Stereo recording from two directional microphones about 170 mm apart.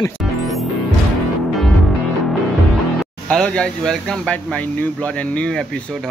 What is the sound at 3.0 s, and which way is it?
Speech, 5° left (ahead or behind).